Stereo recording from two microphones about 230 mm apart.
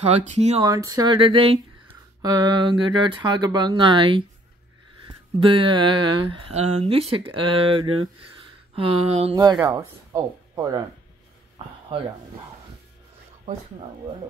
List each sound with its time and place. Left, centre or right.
0.0 s speech: right
0.7 s speech: centre
7.9 s speech: right
8.7 s speech: right
9.3 s speech: centre
11.6 s a sound: right